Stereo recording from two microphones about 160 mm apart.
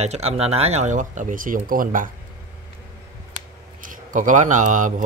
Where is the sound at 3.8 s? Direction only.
55° right (ahead or behind).